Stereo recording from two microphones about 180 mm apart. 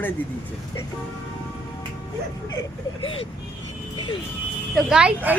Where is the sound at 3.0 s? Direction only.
30° left (ahead or behind).